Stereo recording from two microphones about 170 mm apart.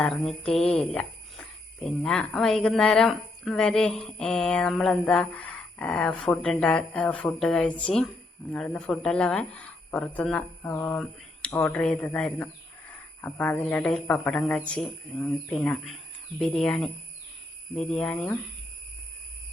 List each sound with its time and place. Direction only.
0.0 s speech: 5° left (ahead or behind)